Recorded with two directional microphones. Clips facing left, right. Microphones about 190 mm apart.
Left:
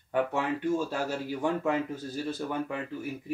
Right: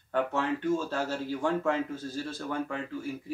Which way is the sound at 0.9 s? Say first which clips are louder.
Even; 15° left (ahead or behind).